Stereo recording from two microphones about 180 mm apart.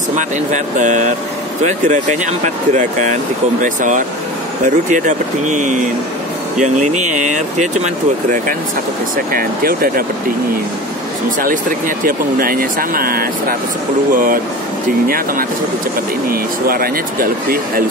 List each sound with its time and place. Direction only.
0.1 s speech: 45° right (ahead or behind)
11.2 s speech: 45° right (ahead or behind)